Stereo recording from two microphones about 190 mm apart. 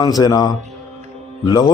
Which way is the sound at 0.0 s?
20° left (ahead or behind).